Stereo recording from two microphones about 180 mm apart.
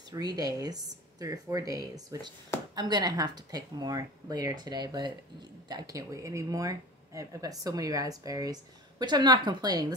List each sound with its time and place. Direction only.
0.1 s speech: 20° right (ahead or behind)